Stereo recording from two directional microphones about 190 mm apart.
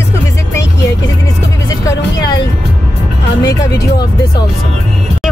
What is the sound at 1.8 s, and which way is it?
Speech, 20° left (ahead or behind).